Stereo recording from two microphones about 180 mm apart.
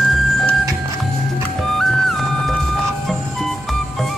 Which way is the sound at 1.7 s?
Centre (ahead or behind).